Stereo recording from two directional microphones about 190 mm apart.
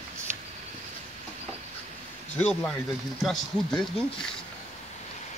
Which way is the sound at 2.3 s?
5° left (ahead or behind).